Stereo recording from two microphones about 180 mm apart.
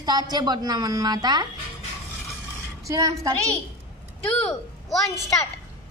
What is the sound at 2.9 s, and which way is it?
Speech, 20° right (ahead or behind).